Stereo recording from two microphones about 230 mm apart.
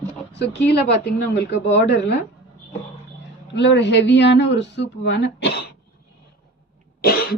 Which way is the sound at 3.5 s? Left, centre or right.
Left.